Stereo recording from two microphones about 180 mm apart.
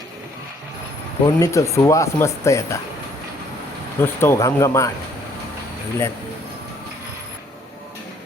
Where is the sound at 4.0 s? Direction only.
10° left (ahead or behind).